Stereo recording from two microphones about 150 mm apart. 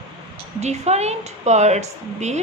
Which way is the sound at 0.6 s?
50° right (ahead or behind).